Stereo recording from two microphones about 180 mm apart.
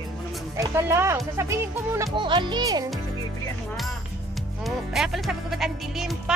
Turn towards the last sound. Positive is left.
turn(degrees=0)  # may be behind; listen again after turning